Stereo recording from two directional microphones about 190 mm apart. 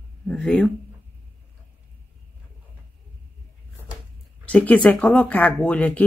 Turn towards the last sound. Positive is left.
turn(degrees=5)  # may be behind; listen again after turning